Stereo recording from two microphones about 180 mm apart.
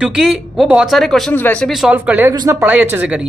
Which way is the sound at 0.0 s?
Centre (ahead or behind).